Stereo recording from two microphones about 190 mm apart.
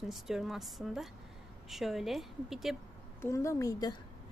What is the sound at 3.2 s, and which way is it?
Speech, 15° left (ahead or behind).